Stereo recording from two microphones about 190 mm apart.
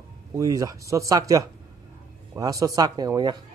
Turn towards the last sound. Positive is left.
turn(degrees=-20)  # may be behind; listen again after turning